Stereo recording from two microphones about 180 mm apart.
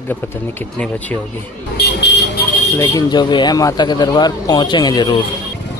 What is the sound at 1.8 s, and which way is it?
Vehicle, 75° left (ahead or behind).